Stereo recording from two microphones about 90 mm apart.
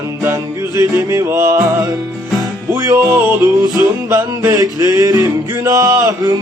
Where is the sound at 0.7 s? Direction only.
40° right (ahead or behind).